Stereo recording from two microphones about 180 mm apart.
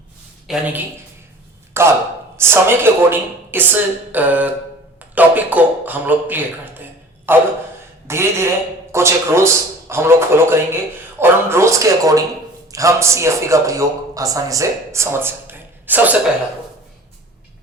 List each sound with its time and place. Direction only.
0.5 s speech: 5° right (ahead or behind)
1.7 s a man's voice: 15° right (ahead or behind)